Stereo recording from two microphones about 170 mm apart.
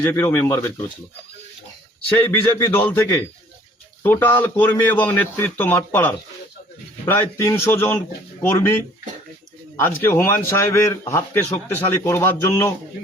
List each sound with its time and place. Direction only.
0.0 s a man's voice: 15° left (ahead or behind)
2.3 s a man's voice: 15° left (ahead or behind)